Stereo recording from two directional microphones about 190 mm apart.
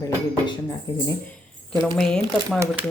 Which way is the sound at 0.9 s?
20° left (ahead or behind).